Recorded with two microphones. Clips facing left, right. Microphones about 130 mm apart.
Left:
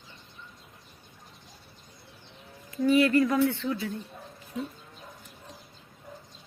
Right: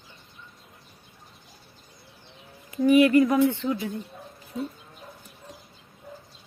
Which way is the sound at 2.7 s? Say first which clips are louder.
Right 4 dB; 15° right (ahead or behind).